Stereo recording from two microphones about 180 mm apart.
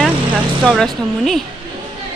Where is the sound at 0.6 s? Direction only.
Centre (ahead or behind).